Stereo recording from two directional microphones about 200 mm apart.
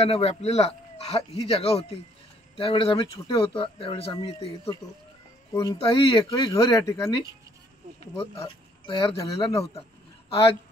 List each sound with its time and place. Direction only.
0.0 s speech: 30° left (ahead or behind)
5.5 s speech: 15° left (ahead or behind)
5.9 s speech: 25° left (ahead or behind)
8.2 s speech: 30° left (ahead or behind)
9.1 s speech: 15° left (ahead or behind)